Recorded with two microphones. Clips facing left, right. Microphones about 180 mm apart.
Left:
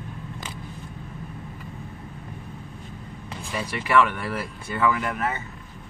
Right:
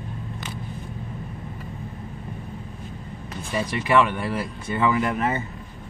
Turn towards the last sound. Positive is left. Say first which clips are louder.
# right 4 dB
turn(degrees=-25)  # may be behind; listen again after turning